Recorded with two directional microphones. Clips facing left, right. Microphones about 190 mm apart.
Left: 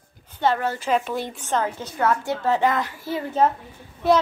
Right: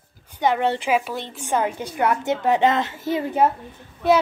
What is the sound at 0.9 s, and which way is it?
A woman's voice, 5° right (ahead or behind).